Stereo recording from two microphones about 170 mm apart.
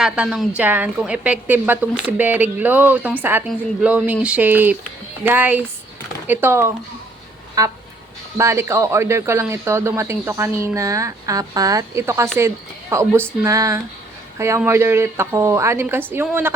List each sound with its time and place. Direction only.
0.0 s a woman's voice: 5° right (ahead or behind)
7.6 s vehicle: 20° right (ahead or behind)
8.4 s a woman's voice: 15° right (ahead or behind)